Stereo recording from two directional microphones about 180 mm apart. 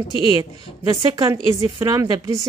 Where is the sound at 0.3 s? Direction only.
25° right (ahead or behind).